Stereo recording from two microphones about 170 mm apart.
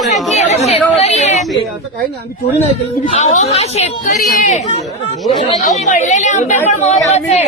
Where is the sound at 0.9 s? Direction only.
40° left (ahead or behind).